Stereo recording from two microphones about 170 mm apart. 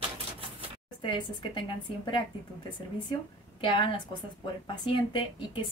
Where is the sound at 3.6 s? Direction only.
30° left (ahead or behind).